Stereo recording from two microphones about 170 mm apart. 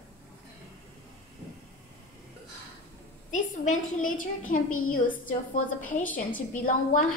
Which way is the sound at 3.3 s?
50° left (ahead or behind).